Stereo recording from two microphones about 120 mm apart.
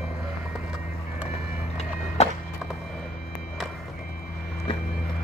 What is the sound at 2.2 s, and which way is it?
Music, 65° left (ahead or behind).